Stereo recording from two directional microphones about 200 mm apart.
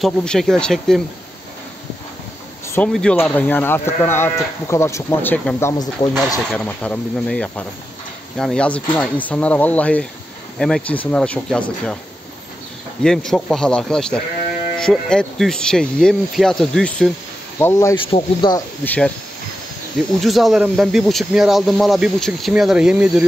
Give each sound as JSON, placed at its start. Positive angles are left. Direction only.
{"t": 0.0, "sound": "speech", "side_deg": 5}
{"t": 2.7, "sound": "speech", "side_deg": 5}
{"t": 13.0, "sound": "speech", "side_deg": 0}
{"t": 17.9, "sound": "speech", "side_deg": 25}
{"t": 18.9, "sound": "speech", "side_deg": 5}
{"t": 20.2, "sound": "speech", "side_deg": 0}